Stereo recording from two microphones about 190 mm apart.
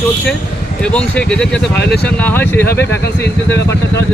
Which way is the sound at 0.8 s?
5° left (ahead or behind).